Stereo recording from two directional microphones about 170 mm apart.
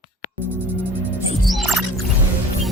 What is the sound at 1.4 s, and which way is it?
Music, centre (ahead or behind).